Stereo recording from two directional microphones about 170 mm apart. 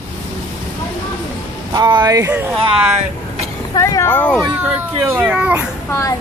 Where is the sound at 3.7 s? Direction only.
20° left (ahead or behind).